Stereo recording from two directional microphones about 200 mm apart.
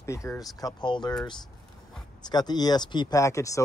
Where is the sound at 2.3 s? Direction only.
20° left (ahead or behind).